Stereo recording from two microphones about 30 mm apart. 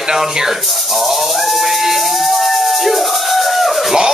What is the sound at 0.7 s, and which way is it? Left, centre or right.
Music, centre.